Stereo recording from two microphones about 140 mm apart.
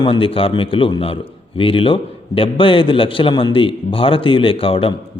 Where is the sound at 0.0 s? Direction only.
40° left (ahead or behind).